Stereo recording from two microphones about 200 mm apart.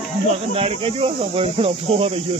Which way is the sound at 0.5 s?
30° right (ahead or behind).